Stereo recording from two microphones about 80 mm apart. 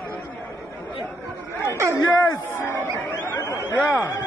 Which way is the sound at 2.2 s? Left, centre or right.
Left.